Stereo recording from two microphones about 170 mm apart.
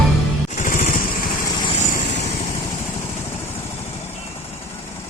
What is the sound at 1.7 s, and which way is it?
Vehicle, 45° left (ahead or behind).